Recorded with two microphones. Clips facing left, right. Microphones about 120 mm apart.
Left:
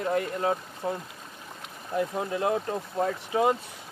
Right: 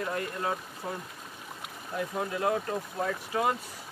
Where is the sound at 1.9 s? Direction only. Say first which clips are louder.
Left 4 dB; 20° left (ahead or behind).